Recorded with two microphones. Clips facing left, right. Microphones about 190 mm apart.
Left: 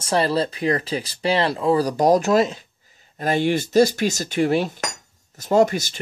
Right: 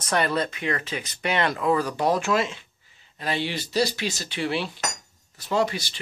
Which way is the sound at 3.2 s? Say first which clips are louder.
Left 8 dB; 45° left (ahead or behind).